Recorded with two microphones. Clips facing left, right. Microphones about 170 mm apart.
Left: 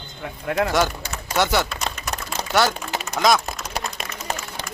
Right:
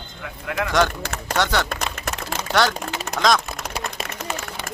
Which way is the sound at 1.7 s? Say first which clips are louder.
Right 2 dB; 50° right (ahead or behind).